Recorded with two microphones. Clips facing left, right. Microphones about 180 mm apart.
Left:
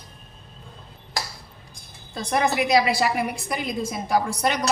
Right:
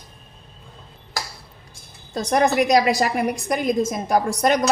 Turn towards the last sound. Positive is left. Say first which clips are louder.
# right 4 dB
turn(degrees=-45)  # may be behind; listen again after turning